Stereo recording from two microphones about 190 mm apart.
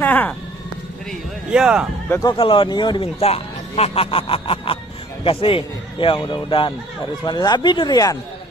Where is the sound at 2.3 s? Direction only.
25° left (ahead or behind).